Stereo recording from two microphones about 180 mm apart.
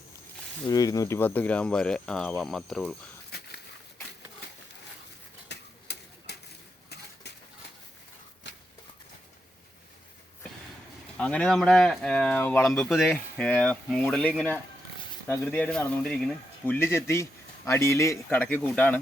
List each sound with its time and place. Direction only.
0.7 s speech: 20° left (ahead or behind); by 2.9 s centre (ahead or behind)
5.5 s pigeon: 65° left (ahead or behind)
8.4 s a sound: 80° left
11.2 s speech: 5° left (ahead or behind)